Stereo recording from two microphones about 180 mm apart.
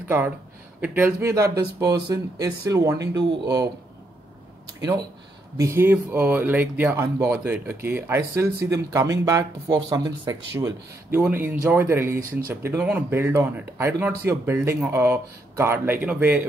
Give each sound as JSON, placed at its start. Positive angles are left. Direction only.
{"t": 0.7, "sound": "speech", "side_deg": -10}
{"t": 4.7, "sound": "speech", "side_deg": -20}
{"t": 12.2, "sound": "speech", "side_deg": -50}
{"t": 12.6, "sound": "speech", "side_deg": -10}